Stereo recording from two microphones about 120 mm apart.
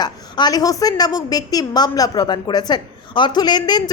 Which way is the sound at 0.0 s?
35° left (ahead or behind).